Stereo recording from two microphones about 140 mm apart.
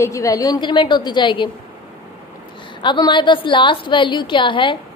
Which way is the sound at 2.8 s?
35° left (ahead or behind).